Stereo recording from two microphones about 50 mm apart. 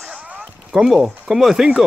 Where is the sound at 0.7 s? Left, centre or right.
Centre.